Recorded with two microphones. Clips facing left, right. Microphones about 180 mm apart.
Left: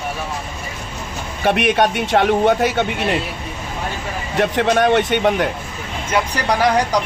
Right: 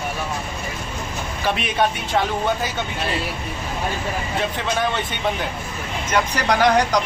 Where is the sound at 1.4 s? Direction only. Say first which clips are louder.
Left 6 dB; 65° left (ahead or behind).